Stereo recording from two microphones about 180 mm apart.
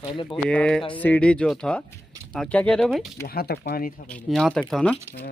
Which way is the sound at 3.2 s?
60° left (ahead or behind).